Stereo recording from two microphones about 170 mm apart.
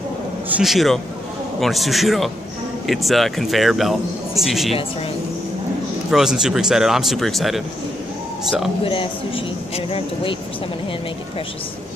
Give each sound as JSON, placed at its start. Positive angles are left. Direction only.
{"t": 0.5, "sound": "speech", "side_deg": -5}
{"t": 6.0, "sound": "speech", "side_deg": -5}
{"t": 8.8, "sound": "speech", "side_deg": 30}